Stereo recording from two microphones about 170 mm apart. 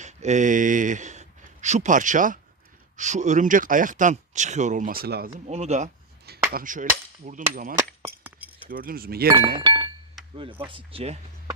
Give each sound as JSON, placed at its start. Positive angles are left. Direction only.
{"t": 0.0, "sound": "speech", "side_deg": -45}
{"t": 5.3, "sound": "speech", "side_deg": -40}
{"t": 6.5, "sound": "speech", "side_deg": -55}
{"t": 8.0, "sound": "chink", "side_deg": -10}
{"t": 8.7, "sound": "speech", "side_deg": -60}
{"t": 9.6, "sound": "chink", "side_deg": -30}
{"t": 10.7, "sound": "speech", "side_deg": -30}